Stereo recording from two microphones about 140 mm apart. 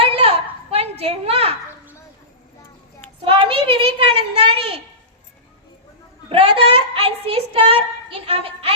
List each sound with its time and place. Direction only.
0.0 s a sound: 45° right (ahead or behind)
3.2 s a child's voice: 40° right (ahead or behind)
6.2 s a child's voice: 40° right (ahead or behind)